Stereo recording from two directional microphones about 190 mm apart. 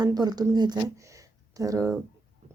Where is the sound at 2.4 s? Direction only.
35° right (ahead or behind).